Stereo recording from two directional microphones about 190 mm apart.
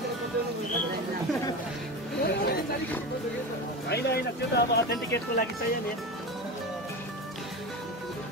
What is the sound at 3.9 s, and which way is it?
Speech, 55° left (ahead or behind).